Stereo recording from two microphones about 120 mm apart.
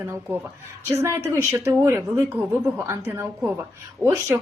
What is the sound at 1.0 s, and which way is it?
Speech, 20° right (ahead or behind).